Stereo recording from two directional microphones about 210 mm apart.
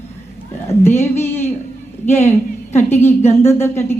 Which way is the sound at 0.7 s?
10° left (ahead or behind).